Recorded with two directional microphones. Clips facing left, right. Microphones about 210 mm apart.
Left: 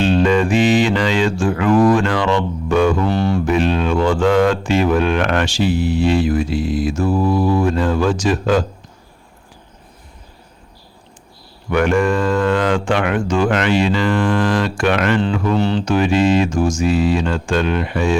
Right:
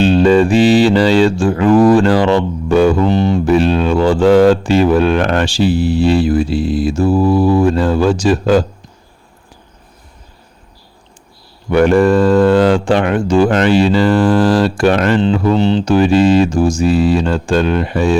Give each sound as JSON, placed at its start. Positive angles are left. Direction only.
{"t": 0.0, "sound": "speech", "side_deg": -35}
{"t": 3.1, "sound": "a sound", "side_deg": -20}
{"t": 3.4, "sound": "speech", "side_deg": -35}
{"t": 11.7, "sound": "speech", "side_deg": -35}